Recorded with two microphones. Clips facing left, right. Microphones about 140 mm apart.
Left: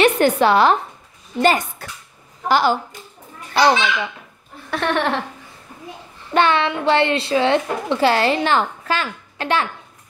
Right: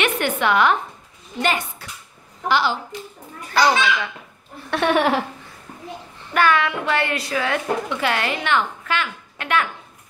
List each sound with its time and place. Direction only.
0.0 s a woman's voice: 35° left (ahead or behind)
3.5 s a woman's voice: 25° left (ahead or behind)
4.6 s laughter: centre (ahead or behind)
6.3 s a woman's voice: 25° left (ahead or behind)